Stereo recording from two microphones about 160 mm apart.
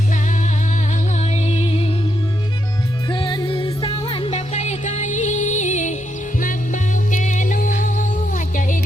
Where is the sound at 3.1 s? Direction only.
30° left (ahead or behind).